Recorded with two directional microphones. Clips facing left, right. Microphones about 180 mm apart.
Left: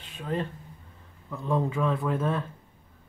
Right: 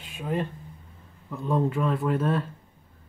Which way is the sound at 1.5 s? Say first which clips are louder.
Right 1 dB; 5° right (ahead or behind).